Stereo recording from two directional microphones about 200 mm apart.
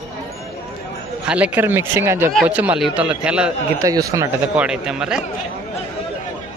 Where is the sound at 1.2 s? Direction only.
5° right (ahead or behind).